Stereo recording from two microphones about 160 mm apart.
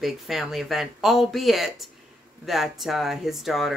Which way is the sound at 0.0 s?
Centre (ahead or behind).